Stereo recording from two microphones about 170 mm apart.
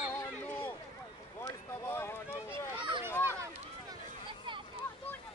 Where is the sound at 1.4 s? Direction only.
15° left (ahead or behind).